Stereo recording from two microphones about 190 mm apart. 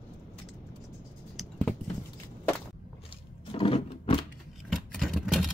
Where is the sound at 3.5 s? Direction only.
30° left (ahead or behind).